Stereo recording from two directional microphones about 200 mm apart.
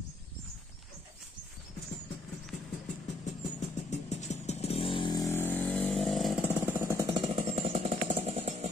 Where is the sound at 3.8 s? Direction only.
35° left (ahead or behind); by 7.2 s 15° right (ahead or behind).